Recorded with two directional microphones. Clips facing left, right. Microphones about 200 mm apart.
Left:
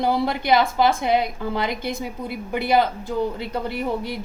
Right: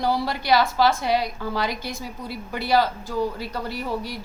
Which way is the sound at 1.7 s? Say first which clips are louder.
Left 4 dB; 55° left (ahead or behind).